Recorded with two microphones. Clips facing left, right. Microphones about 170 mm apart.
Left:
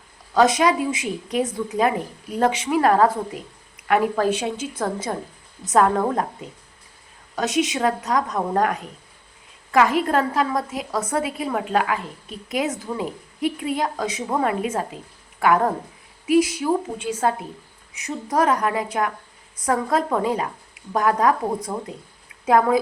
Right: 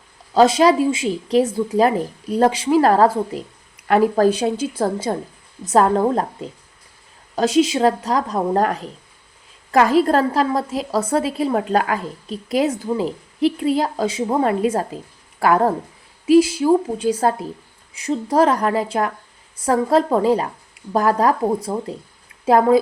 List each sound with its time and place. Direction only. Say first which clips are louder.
0.3 s a woman's voice: right 4 dB; 30° right (ahead or behind)
7.3 s a woman's voice: right 6 dB; 30° right (ahead or behind)